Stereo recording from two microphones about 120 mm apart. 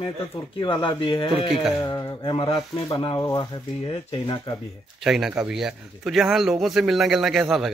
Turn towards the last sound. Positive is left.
turn(degrees=0)  # may be behind; listen again after turning